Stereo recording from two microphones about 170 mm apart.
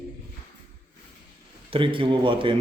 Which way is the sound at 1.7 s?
30° right (ahead or behind).